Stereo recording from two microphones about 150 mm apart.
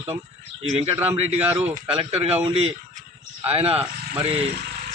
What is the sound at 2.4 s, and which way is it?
Speech, 40° right (ahead or behind).